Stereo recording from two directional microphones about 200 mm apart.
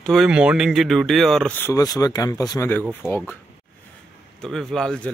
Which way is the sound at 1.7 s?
15° left (ahead or behind).